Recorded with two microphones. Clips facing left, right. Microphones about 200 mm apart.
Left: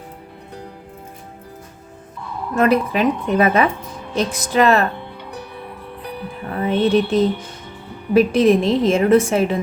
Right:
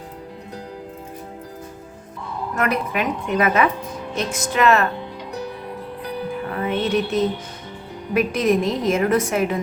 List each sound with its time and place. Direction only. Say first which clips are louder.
2.6 s speech: left 7 dB; 30° left (ahead or behind)
6.5 s music: left 6 dB; 30° left (ahead or behind)
8.1 s a woman's voice: left 5 dB; 30° left (ahead or behind)